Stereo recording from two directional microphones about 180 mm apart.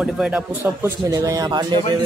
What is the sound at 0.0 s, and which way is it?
Speech, 5° right (ahead or behind).